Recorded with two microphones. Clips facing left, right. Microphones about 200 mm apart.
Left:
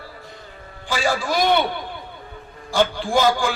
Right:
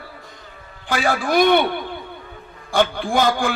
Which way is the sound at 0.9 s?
55° right (ahead or behind).